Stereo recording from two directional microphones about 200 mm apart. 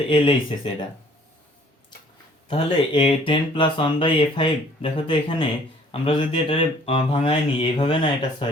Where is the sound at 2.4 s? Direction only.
30° left (ahead or behind).